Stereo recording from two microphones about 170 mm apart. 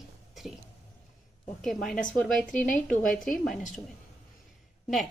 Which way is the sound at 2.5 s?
50° left (ahead or behind).